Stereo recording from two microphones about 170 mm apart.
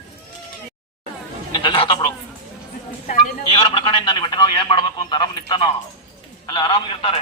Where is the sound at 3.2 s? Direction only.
30° left (ahead or behind).